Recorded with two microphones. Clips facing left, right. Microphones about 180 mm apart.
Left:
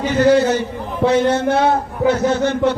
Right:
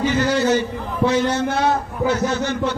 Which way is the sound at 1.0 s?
55° left (ahead or behind).